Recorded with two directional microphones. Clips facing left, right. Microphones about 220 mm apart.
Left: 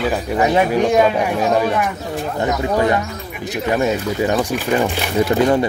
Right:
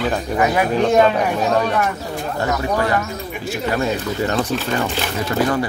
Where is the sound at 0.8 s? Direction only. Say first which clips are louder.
Even; 10° left (ahead or behind).